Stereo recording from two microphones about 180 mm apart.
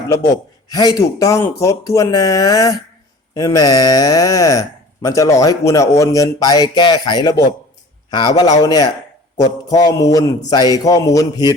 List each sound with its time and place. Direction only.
0.1 s speech: 15° left (ahead or behind)